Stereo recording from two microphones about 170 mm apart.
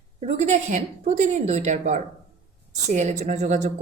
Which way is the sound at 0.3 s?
40° right (ahead or behind).